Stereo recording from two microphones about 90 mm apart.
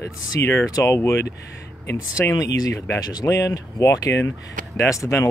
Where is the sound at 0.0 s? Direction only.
30° left (ahead or behind).